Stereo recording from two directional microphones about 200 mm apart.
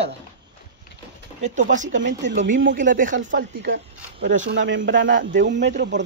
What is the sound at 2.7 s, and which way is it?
Speech, 40° right (ahead or behind).